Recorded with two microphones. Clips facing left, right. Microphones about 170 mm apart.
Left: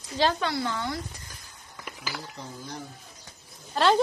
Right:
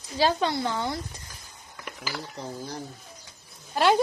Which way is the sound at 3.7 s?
10° right (ahead or behind).